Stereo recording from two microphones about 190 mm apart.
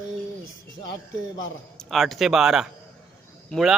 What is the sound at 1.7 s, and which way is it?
A man's voice, centre (ahead or behind).